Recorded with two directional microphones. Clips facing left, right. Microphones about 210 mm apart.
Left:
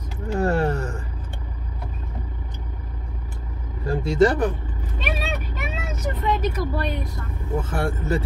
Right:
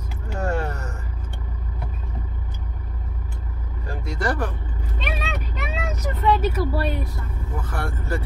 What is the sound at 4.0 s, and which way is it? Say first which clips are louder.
Speech: left 8 dB; 25° left (ahead or behind).